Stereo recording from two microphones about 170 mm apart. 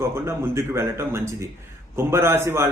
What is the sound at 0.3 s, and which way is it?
A man's voice, 15° right (ahead or behind).